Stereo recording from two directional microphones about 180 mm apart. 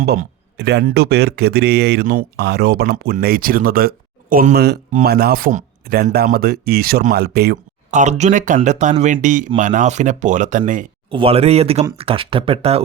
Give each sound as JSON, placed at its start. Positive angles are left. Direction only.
{"t": 0.0, "sound": "speech", "side_deg": -60}
{"t": 7.9, "sound": "speech", "side_deg": -40}
{"t": 11.1, "sound": "speech", "side_deg": -30}